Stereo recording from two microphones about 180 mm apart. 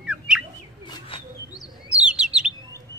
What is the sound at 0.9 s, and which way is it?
Bird, 25° left (ahead or behind).